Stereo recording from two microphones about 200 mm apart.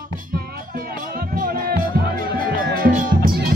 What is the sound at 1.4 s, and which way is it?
Music, 45° right (ahead or behind).